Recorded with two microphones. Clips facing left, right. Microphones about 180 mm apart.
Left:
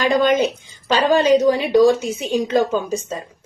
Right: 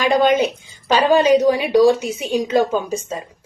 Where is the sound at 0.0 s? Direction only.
10° right (ahead or behind).